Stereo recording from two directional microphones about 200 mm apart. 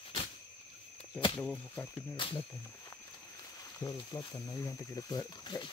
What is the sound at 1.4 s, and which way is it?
Speech, 5° left (ahead or behind).